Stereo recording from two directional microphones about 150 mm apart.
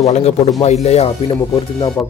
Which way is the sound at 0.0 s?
45° left (ahead or behind).